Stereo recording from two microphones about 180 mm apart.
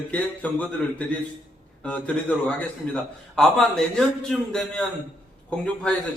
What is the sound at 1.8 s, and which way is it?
A man's voice, 5° left (ahead or behind).